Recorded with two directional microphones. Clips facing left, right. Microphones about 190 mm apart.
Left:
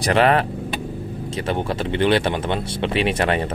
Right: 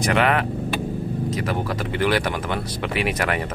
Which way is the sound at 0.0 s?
35° left (ahead or behind).